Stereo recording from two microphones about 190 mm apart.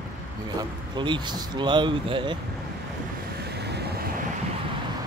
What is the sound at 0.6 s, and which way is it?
Speech, 25° right (ahead or behind).